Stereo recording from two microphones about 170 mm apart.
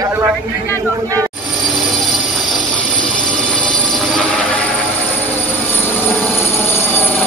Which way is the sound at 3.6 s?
5° left (ahead or behind).